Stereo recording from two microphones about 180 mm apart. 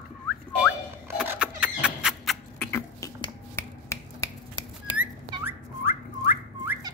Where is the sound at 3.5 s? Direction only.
15° left (ahead or behind).